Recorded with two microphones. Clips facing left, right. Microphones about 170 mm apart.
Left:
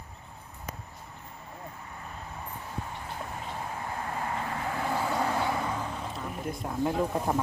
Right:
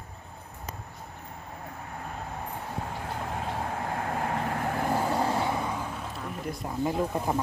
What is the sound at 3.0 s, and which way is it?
Vehicle, 70° right (ahead or behind).